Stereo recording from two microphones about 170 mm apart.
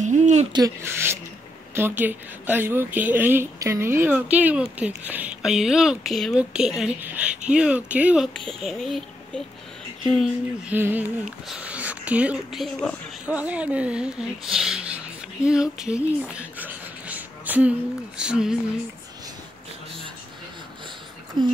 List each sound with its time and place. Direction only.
0.0 s speech: 45° right (ahead or behind)
0.5 s a child's voice: 20° right (ahead or behind); by 18.6 s 5° right (ahead or behind)
21.4 s speech: 25° right (ahead or behind)